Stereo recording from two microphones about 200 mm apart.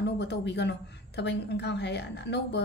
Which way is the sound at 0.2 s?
60° left (ahead or behind).